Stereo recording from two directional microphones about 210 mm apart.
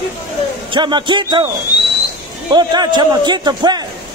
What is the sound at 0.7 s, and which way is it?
Speech, 20° right (ahead or behind).